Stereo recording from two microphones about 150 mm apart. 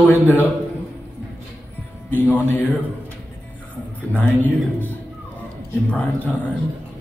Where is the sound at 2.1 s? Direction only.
15° left (ahead or behind).